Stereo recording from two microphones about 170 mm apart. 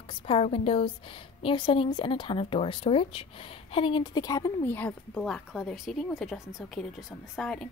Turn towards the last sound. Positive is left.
turn(degrees=5)  # may be behind; listen again after turning